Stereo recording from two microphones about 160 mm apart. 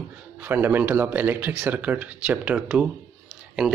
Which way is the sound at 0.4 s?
15° right (ahead or behind).